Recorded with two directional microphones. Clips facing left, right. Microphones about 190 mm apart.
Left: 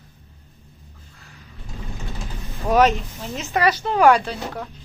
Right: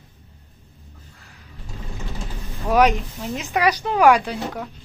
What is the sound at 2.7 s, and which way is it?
Speech, 15° right (ahead or behind).